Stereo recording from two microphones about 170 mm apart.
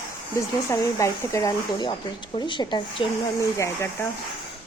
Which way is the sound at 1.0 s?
15° left (ahead or behind).